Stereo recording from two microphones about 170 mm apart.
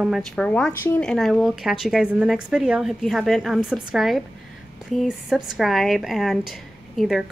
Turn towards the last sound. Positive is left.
turn(degrees=0)  # may be behind; listen again after turning